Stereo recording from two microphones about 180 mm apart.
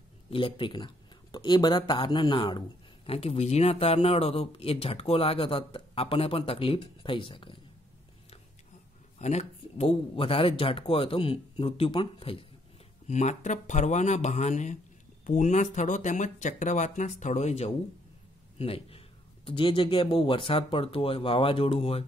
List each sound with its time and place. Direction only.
0.3 s speech: 30° left (ahead or behind)
9.2 s speech: 35° left (ahead or behind)
13.1 s speech: 40° left (ahead or behind)